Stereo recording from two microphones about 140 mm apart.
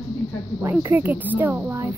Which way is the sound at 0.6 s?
15° right (ahead or behind).